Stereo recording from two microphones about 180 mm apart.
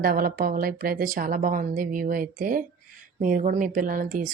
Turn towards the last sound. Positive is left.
turn(degrees=-45)  # may be behind; listen again after turning